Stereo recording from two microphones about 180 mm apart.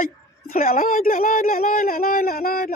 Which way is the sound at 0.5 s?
50° left (ahead or behind).